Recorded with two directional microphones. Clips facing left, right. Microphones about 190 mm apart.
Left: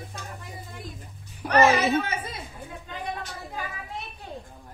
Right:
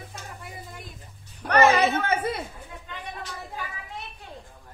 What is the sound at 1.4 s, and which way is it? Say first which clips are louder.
Speech: even; 5° left (ahead or behind).